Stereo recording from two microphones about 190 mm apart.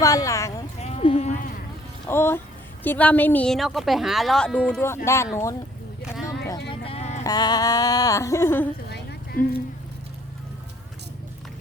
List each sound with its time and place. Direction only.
0.0 s speech: 15° left (ahead or behind)
0.8 s sheep: 35° left (ahead or behind)
2.0 s a woman's voice: 10° left (ahead or behind)
6.0 s a sound: 5° right (ahead or behind)
6.7 s vehicle: 30° left (ahead or behind)
7.3 s speech: 20° left (ahead or behind)
8.9 s a sound: 60° left (ahead or behind)